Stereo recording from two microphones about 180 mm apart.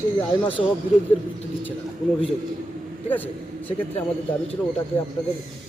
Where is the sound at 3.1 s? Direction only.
10° left (ahead or behind).